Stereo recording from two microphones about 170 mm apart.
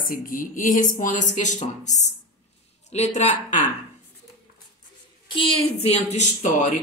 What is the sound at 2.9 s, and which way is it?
Speech, 40° left (ahead or behind).